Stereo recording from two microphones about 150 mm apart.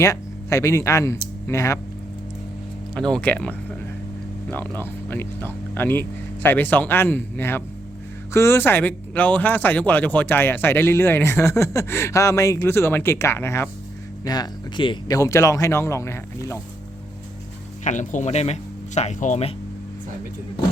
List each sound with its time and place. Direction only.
0.0 s speech: 20° left (ahead or behind)
2.9 s speech: 5° left (ahead or behind)
4.8 s speech: 15° left (ahead or behind)
14.3 s speech: 25° left (ahead or behind)
17.8 s speech: 55° left (ahead or behind)